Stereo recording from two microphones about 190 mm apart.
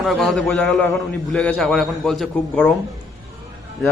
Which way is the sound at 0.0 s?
Centre (ahead or behind).